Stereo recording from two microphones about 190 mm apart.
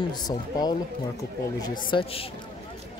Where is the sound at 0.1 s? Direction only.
20° left (ahead or behind).